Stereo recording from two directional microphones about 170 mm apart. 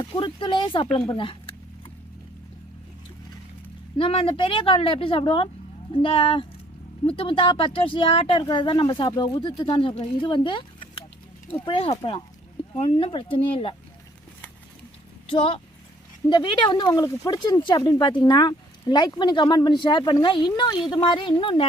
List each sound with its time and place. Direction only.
0.0 s speech: 30° left (ahead or behind)
3.9 s a woman's voice: 30° left (ahead or behind)
15.3 s a woman's voice: 35° left (ahead or behind)